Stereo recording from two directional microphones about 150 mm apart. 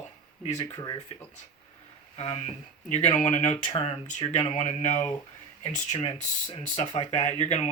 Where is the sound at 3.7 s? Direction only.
40° left (ahead or behind).